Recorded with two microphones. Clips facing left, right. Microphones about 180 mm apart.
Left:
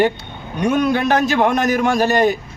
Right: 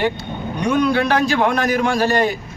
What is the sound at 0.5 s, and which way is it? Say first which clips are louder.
A man's voice: left 1 dB; 45° left (ahead or behind).